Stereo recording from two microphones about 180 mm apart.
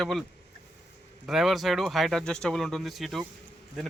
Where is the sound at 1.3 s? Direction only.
Centre (ahead or behind).